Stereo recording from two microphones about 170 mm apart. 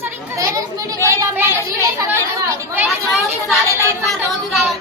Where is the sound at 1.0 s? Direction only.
15° right (ahead or behind).